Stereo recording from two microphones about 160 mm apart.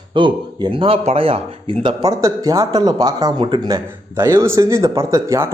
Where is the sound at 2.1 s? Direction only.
20° right (ahead or behind).